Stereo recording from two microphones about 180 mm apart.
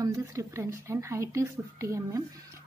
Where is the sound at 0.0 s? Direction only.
15° right (ahead or behind).